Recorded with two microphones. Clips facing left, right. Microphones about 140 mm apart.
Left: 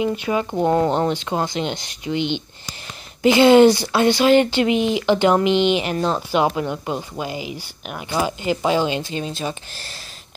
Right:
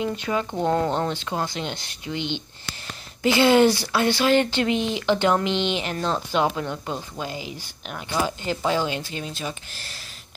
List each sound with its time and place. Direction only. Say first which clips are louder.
0.0 s speech: left 4 dB; 10° left (ahead or behind); by 9.6 s 30° left (ahead or behind)